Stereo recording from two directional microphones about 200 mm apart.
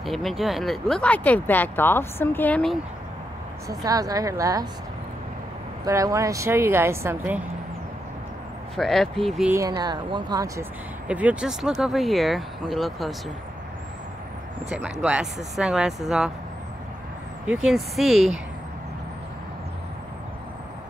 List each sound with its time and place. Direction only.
0.0 s speech: centre (ahead or behind)
3.6 s a woman's voice: 15° right (ahead or behind)
5.9 s a woman's voice: 15° right (ahead or behind)
8.7 s speech: centre (ahead or behind)
9.5 s speech: 15° right (ahead or behind)
14.7 s speech: 5° right (ahead or behind)
17.6 s speech: centre (ahead or behind)